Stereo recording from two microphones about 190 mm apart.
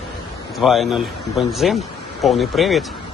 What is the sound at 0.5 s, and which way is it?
A man's voice, centre (ahead or behind).